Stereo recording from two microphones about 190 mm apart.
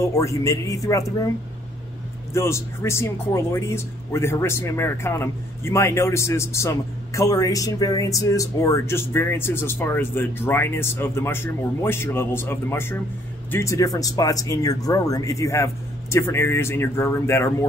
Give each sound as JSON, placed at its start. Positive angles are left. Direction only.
{"t": 0.0, "sound": "speech", "side_deg": 15}
{"t": 2.3, "sound": "speech", "side_deg": 15}